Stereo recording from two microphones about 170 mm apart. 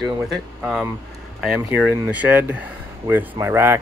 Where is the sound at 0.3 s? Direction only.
5° right (ahead or behind).